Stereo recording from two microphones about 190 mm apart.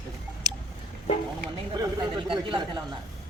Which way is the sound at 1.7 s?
20° right (ahead or behind).